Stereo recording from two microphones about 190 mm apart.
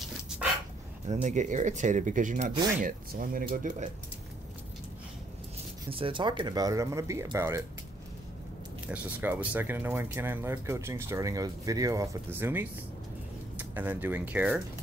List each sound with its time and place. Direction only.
1.0 s speech: 40° right (ahead or behind)
5.9 s speech: 30° right (ahead or behind)
8.8 s speech: 5° right (ahead or behind)